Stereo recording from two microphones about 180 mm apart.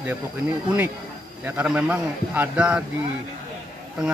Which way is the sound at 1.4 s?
10° right (ahead or behind).